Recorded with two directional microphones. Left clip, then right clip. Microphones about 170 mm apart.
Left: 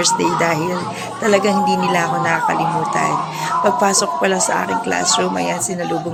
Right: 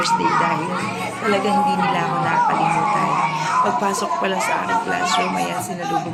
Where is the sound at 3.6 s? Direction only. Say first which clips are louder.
Left 4 dB; 40° left (ahead or behind).